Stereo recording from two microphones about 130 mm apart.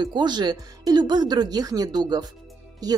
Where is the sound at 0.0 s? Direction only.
35° right (ahead or behind).